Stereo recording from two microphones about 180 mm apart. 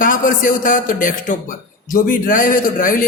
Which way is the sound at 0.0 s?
50° left (ahead or behind).